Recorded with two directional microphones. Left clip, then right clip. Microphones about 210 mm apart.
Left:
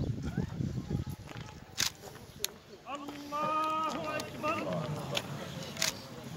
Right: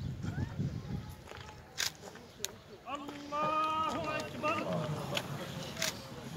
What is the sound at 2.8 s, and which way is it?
Boat, 55° right (ahead or behind).